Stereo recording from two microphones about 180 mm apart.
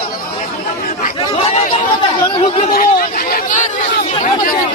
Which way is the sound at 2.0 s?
30° left (ahead or behind).